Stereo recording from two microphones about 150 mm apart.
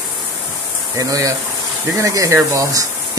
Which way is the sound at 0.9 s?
20° right (ahead or behind).